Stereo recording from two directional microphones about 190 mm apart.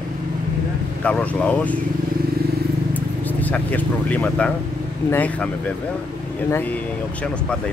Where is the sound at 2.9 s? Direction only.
10° left (ahead or behind).